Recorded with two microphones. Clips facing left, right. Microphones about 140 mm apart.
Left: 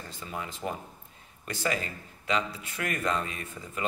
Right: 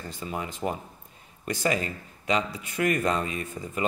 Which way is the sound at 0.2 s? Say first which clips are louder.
Right 4 dB; 20° right (ahead or behind).